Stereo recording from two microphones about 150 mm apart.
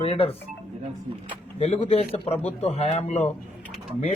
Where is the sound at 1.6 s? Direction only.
45° left (ahead or behind).